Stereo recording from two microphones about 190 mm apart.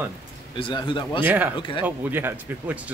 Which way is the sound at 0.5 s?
25° left (ahead or behind).